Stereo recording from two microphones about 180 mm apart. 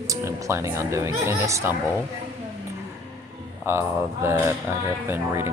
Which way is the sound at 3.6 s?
15° right (ahead or behind).